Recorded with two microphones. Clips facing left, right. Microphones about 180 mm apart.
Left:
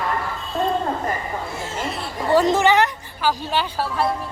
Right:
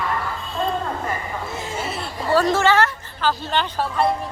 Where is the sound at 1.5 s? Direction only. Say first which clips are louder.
Even; 15° right (ahead or behind).